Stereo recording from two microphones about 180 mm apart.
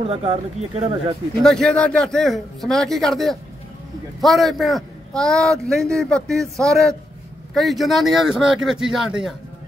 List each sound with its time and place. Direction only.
0.0 s speech: 35° right (ahead or behind)
1.4 s a man's voice: 5° left (ahead or behind)